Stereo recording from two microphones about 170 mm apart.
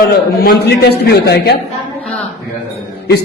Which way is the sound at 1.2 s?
75° left (ahead or behind).